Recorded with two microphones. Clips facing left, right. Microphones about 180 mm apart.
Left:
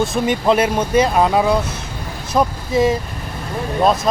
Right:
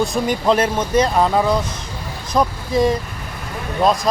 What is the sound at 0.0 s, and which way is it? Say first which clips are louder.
Speech: left 1 dB; centre (ahead or behind).